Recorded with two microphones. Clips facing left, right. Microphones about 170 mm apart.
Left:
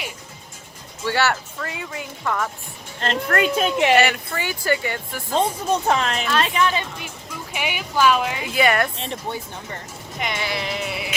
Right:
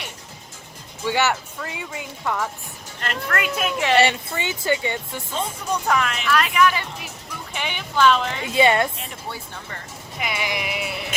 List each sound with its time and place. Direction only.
1.0 s a woman's voice: 15° right (ahead or behind)
3.0 s speech: 30° left (ahead or behind)
3.9 s speech: 25° right (ahead or behind)
5.3 s speech: 25° left (ahead or behind)
7.5 s speech: 10° left (ahead or behind)
8.4 s speech: 25° right (ahead or behind)
9.0 s speech: 25° left (ahead or behind)
10.2 s a woman's voice: 5° right (ahead or behind)